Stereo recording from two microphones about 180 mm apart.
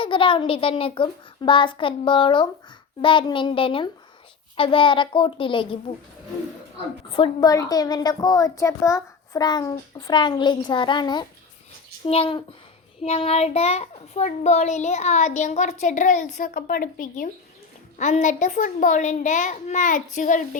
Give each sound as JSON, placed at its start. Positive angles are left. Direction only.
{"t": 0.0, "sound": "a woman's voice", "side_deg": 30}
{"t": 7.1, "sound": "a woman's voice", "side_deg": 25}
{"t": 17.9, "sound": "a child's voice", "side_deg": 40}